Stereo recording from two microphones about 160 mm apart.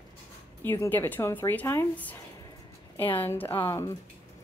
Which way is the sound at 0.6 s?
10° left (ahead or behind).